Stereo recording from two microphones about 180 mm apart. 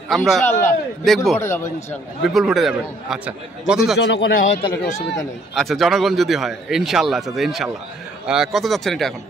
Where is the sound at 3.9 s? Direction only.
70° left (ahead or behind).